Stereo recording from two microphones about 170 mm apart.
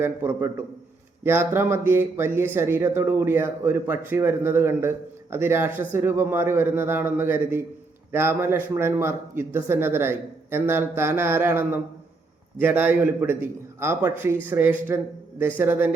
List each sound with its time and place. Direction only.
0.0 s speech: 15° right (ahead or behind)